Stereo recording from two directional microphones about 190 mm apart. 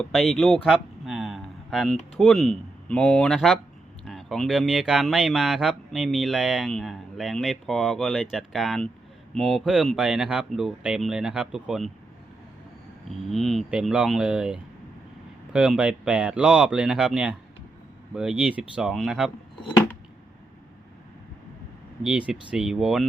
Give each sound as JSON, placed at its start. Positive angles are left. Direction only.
{"t": 0.0, "sound": "speech", "side_deg": 0}
{"t": 13.1, "sound": "speech", "side_deg": 0}
{"t": 22.3, "sound": "speech", "side_deg": -5}